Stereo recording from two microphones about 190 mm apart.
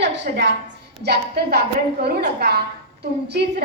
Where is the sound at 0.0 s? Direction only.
70° right (ahead or behind).